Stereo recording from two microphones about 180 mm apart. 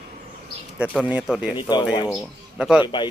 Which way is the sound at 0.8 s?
5° right (ahead or behind).